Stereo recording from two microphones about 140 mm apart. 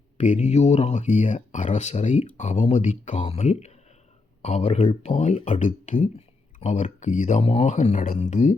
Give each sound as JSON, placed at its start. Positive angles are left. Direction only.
{"t": 0.2, "sound": "speech", "side_deg": 60}
{"t": 5.9, "sound": "speech", "side_deg": 50}